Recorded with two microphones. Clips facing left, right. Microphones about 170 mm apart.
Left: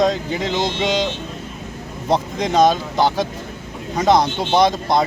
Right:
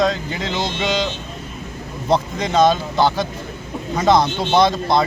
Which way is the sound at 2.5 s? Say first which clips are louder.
Even; 15° left (ahead or behind).